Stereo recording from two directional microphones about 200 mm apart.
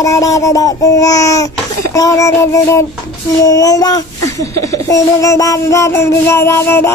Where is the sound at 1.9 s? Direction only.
15° left (ahead or behind).